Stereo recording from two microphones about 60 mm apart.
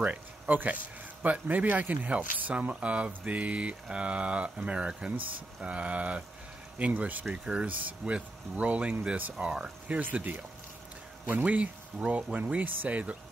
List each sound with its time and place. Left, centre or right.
0.0 s speech: right
1.2 s boiling: right
7.4 s speech: centre
8.0 s boiling: right